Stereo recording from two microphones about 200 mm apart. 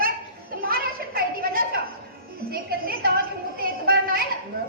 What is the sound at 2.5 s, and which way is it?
Speech, 50° right (ahead or behind).